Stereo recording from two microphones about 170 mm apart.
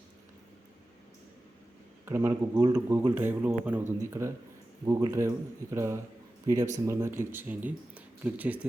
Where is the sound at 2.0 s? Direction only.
15° right (ahead or behind).